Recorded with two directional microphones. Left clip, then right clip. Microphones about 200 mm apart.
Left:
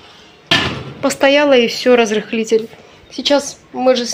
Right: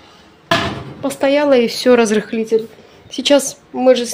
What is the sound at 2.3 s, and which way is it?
Speech, 5° right (ahead or behind).